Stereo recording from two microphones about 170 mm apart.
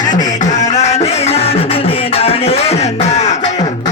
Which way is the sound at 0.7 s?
40° left (ahead or behind).